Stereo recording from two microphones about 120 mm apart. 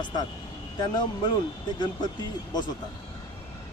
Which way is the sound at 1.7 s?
35° left (ahead or behind).